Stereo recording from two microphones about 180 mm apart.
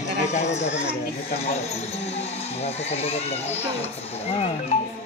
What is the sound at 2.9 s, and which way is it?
Speech, 35° left (ahead or behind).